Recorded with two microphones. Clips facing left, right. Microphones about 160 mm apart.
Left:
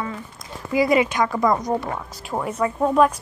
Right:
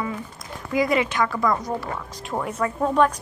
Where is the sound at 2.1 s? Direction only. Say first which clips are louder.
Left 1 dB; 5° left (ahead or behind).